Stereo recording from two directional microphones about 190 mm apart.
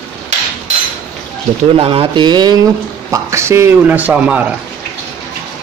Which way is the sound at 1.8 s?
30° right (ahead or behind).